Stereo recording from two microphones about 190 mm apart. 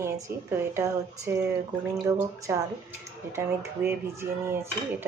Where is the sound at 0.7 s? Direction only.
15° right (ahead or behind).